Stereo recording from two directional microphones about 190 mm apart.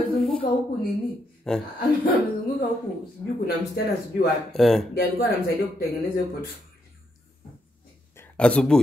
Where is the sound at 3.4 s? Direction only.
55° left (ahead or behind).